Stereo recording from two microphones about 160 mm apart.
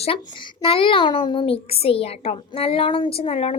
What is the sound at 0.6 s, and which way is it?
A child's voice, 35° left (ahead or behind).